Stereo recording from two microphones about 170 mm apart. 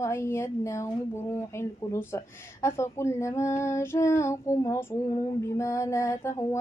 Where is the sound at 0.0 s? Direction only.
15° left (ahead or behind).